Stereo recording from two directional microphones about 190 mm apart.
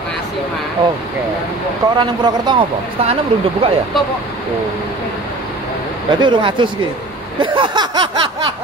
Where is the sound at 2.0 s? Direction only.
25° right (ahead or behind).